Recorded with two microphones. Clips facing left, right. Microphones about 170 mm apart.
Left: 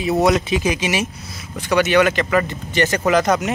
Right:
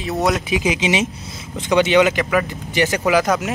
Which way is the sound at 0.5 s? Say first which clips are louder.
Right 1 dB; 15° right (ahead or behind).